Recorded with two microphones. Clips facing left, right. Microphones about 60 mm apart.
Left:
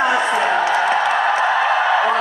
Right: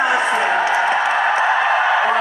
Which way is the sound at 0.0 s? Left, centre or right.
Centre.